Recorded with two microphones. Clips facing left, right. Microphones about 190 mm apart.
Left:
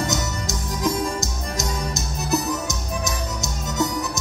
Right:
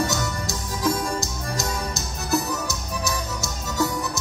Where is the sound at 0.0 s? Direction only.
20° left (ahead or behind).